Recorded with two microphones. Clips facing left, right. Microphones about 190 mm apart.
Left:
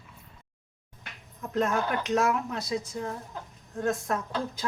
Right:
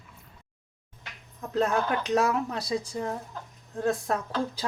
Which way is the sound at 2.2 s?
35° right (ahead or behind).